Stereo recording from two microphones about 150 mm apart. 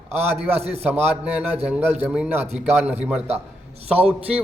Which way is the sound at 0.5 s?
45° right (ahead or behind).